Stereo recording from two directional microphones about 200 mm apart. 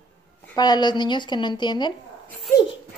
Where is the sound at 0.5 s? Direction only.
20° left (ahead or behind).